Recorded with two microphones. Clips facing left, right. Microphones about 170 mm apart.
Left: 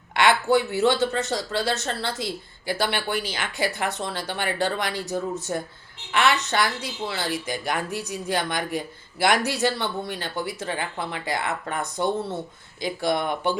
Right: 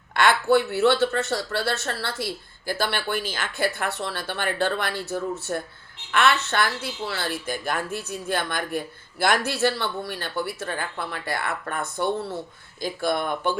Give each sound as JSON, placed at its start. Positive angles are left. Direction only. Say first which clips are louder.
{"t": 0.2, "sound": "speech", "louder": "even", "side_deg": 15}